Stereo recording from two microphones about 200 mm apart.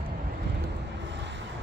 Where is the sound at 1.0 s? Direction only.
60° right (ahead or behind).